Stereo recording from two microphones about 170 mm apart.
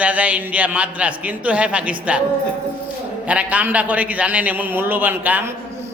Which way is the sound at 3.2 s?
10° right (ahead or behind).